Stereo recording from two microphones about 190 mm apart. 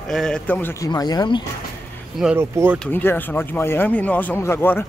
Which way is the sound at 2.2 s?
10° right (ahead or behind).